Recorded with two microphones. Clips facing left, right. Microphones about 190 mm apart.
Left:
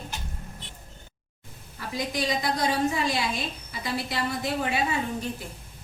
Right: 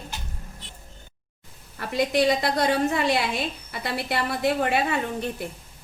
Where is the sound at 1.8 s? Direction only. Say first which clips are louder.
Right 8 dB; 65° right (ahead or behind).